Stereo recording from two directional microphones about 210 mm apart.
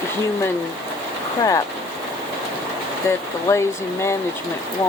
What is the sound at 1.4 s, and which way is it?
Speech, 15° left (ahead or behind).